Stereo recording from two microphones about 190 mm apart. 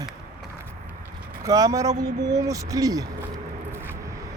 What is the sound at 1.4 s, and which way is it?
Speech, 20° right (ahead or behind).